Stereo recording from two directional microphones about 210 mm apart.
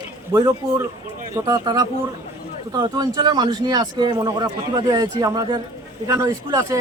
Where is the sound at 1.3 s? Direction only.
15° right (ahead or behind).